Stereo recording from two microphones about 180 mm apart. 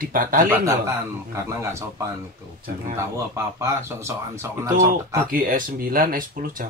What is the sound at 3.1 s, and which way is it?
Speech, 15° right (ahead or behind).